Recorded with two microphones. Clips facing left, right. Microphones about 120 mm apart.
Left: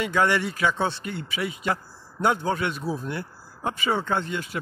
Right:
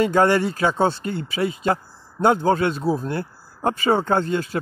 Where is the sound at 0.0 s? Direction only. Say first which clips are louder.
Right 6 dB; 40° right (ahead or behind).